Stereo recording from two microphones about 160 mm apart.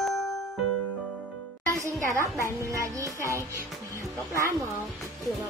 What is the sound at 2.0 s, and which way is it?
Speech, 20° right (ahead or behind).